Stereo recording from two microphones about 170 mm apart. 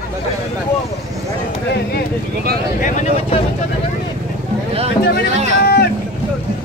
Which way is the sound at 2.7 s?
45° left (ahead or behind).